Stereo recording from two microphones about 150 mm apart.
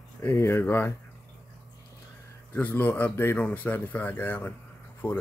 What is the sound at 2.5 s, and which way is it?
Speech, 10° left (ahead or behind).